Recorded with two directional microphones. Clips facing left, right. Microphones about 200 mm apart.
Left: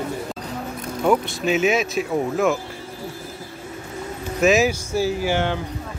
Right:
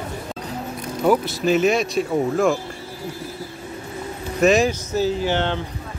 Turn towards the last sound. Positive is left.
turn(degrees=10)  # may be behind; listen again after turning